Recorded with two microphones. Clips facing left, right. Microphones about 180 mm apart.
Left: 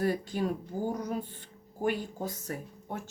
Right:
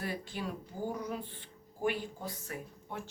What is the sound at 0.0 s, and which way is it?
Speech, 45° left (ahead or behind).